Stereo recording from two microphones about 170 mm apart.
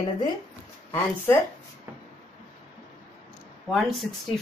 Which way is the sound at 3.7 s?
Centre (ahead or behind).